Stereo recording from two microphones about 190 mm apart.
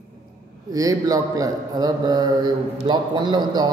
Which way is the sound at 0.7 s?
20° right (ahead or behind).